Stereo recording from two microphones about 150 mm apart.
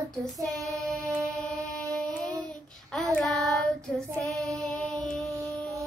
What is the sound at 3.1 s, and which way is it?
Child singing, 5° left (ahead or behind).